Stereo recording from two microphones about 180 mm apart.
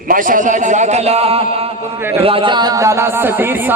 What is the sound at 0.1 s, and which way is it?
A man's voice, 50° right (ahead or behind).